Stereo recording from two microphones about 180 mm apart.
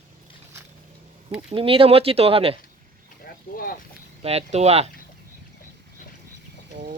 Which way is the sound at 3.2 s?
55° left (ahead or behind).